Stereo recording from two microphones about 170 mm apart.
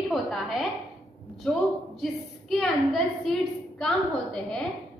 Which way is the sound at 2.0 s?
Centre (ahead or behind).